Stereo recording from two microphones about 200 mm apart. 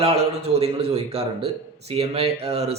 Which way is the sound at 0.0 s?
30° right (ahead or behind).